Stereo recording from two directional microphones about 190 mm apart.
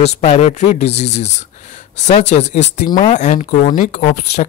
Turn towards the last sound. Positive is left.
turn(degrees=40)  # may be behind; listen again after turning